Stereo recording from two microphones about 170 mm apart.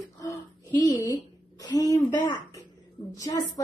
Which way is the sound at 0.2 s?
20° left (ahead or behind).